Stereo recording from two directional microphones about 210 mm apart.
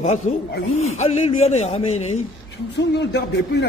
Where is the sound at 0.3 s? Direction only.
35° left (ahead or behind).